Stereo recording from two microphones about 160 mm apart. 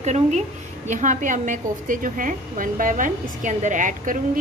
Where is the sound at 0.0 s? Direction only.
45° right (ahead or behind).